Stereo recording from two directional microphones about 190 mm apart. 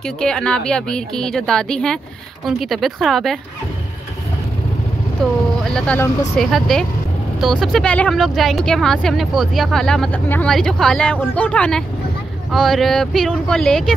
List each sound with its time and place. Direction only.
0.0 s speech: 5° left (ahead or behind)
5.2 s speech: 5° left (ahead or behind)